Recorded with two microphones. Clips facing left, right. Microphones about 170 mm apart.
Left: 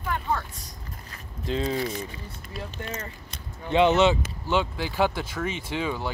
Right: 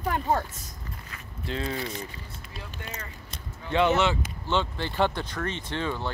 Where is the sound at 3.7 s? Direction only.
20° left (ahead or behind).